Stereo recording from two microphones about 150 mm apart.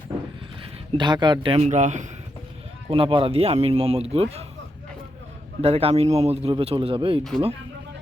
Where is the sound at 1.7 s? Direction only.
50° right (ahead or behind).